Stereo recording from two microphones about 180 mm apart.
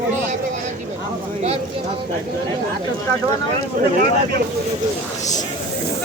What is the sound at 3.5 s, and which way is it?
Speech, 35° right (ahead or behind).